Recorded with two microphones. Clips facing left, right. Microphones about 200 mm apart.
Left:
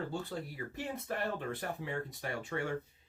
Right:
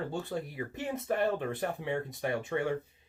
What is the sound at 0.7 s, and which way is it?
Speech, 20° right (ahead or behind).